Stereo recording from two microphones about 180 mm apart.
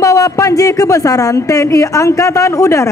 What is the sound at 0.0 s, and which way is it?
Speech, 20° left (ahead or behind).